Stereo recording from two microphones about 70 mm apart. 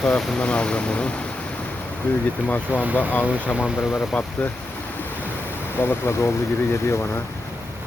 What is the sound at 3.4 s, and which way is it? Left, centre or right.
Speech, centre.